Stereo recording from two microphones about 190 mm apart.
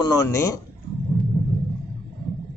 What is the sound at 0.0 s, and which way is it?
Speech, 20° left (ahead or behind).